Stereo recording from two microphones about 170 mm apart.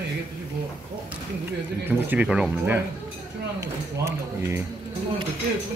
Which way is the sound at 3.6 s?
15° right (ahead or behind).